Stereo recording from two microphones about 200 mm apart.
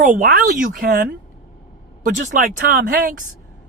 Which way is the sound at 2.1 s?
40° right (ahead or behind).